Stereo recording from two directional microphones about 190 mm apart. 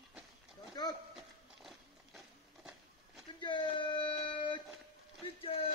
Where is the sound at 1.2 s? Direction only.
Centre (ahead or behind).